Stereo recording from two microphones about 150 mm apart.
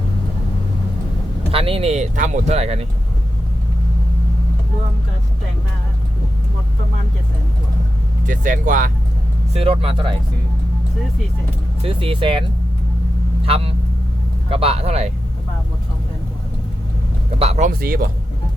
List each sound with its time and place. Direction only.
1.5 s speech: 40° right (ahead or behind)
8.3 s speech: 60° right (ahead or behind)
9.5 s speech: 40° right (ahead or behind)
11.8 s speech: 35° right (ahead or behind)
17.4 s speech: 45° right (ahead or behind)
17.7 s speech: 75° right (ahead or behind)